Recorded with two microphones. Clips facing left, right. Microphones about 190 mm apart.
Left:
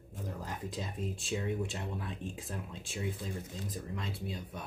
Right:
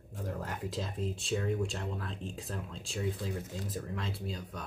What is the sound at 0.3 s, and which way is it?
Speech, centre (ahead or behind).